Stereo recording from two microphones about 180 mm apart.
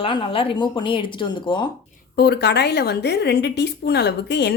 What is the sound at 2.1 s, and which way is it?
A woman's voice, 65° left (ahead or behind).